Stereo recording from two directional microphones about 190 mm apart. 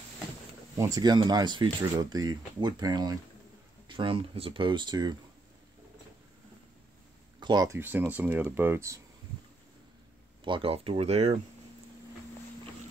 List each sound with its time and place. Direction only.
0.7 s speech: 20° right (ahead or behind)
7.3 s speech: 20° right (ahead or behind)
10.4 s speech: 25° right (ahead or behind)